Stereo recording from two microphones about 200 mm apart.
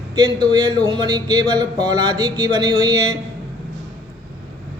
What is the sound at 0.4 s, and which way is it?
Speech, 20° right (ahead or behind).